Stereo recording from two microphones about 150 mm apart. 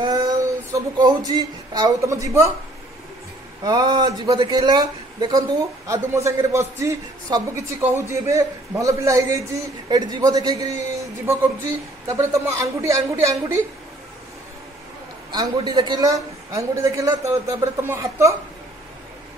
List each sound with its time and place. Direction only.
0.0 s speech: 25° right (ahead or behind)
3.6 s a man's voice: 25° right (ahead or behind)
15.3 s a man's voice: 30° right (ahead or behind)